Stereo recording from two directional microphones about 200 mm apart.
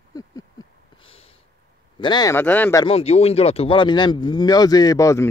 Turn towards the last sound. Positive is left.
turn(degrees=15)  # may be behind; listen again after turning